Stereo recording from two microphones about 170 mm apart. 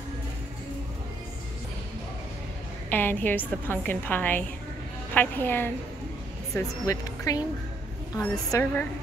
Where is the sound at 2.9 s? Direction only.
10° left (ahead or behind).